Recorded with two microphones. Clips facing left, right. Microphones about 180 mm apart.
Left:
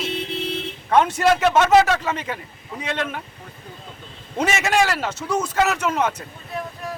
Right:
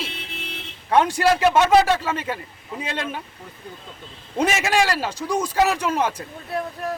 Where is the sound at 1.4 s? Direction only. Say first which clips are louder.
Even; 10° right (ahead or behind).